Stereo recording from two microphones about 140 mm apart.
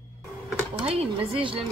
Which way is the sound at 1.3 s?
40° right (ahead or behind).